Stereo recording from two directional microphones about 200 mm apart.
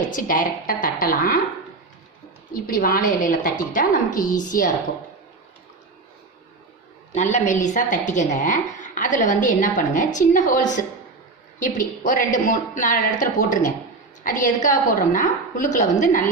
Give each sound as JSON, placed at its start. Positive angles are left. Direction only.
{"t": 0.1, "sound": "a woman's voice", "side_deg": 45}
{"t": 2.5, "sound": "a woman's voice", "side_deg": 45}
{"t": 7.1, "sound": "a woman's voice", "side_deg": 35}
{"t": 11.6, "sound": "a woman's voice", "side_deg": 40}